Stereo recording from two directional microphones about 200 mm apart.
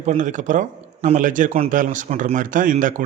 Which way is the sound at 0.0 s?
35° right (ahead or behind).